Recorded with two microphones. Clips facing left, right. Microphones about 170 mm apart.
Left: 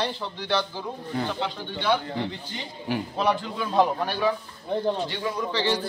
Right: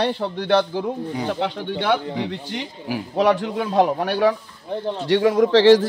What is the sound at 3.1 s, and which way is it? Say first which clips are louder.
A man's voice: right 9 dB; 85° right.